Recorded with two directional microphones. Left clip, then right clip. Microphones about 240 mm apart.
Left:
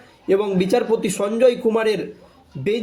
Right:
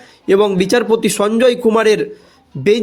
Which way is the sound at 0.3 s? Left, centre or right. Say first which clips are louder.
Right 6 dB; right.